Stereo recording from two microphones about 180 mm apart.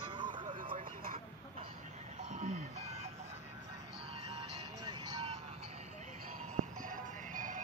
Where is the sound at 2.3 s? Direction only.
40° right (ahead or behind).